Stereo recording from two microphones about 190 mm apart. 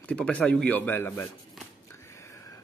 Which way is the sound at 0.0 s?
5° left (ahead or behind).